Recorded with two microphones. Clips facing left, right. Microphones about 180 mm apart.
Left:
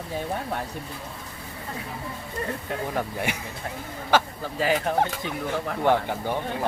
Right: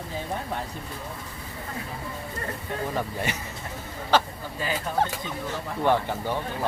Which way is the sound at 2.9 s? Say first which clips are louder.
Left 1 dB; 10° left (ahead or behind).